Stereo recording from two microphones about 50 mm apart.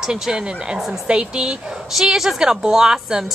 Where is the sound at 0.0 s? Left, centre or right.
Centre.